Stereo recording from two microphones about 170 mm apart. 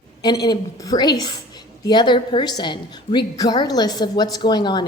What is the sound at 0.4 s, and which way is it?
A woman's voice, 20° left (ahead or behind).